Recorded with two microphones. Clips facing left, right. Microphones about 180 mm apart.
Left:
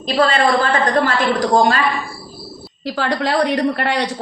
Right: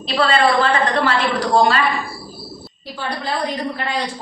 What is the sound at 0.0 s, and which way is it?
A woman's voice, 45° left (ahead or behind).